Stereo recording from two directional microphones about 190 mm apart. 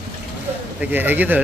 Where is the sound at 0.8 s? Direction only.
10° right (ahead or behind).